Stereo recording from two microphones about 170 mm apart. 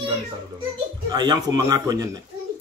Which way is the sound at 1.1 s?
25° right (ahead or behind).